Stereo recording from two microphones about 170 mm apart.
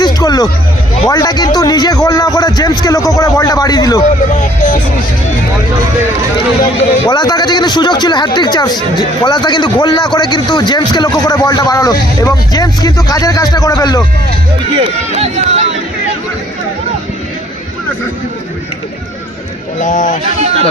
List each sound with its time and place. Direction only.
0.0 s hubbub: 25° left (ahead or behind)
1.1 s speech: 20° left (ahead or behind)
4.3 s music: 45° left (ahead or behind)
7.1 s speech: 25° left (ahead or behind)
14.8 s speech: 40° right (ahead or behind)
19.8 s speech: 50° left (ahead or behind)
20.4 s speech: 40° right (ahead or behind)